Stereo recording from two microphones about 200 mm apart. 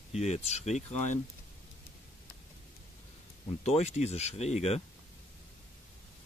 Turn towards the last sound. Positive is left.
turn(degrees=30)  # may be behind; listen again after turning